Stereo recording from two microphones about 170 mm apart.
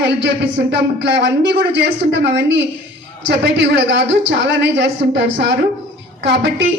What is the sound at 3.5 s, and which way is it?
Speech, 90° right.